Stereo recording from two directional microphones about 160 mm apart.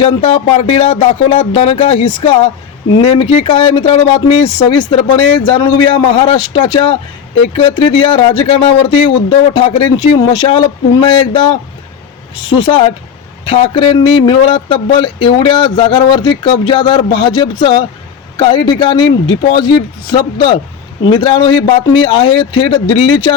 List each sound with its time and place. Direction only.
0.0 s speech: 35° left (ahead or behind)
12.5 s speech: 30° left (ahead or behind)